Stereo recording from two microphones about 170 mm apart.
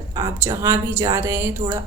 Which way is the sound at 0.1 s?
20° right (ahead or behind).